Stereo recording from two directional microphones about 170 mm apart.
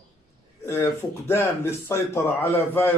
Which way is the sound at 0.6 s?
15° left (ahead or behind).